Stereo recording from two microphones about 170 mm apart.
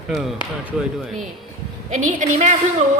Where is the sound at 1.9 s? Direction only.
45° right (ahead or behind).